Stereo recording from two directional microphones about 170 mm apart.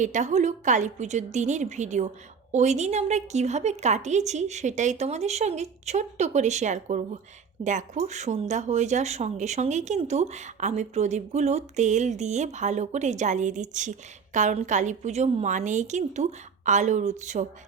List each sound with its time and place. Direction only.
0.0 s speech: 45° right (ahead or behind)